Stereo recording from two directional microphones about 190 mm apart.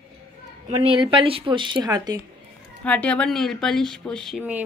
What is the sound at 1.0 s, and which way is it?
Speech, 25° right (ahead or behind).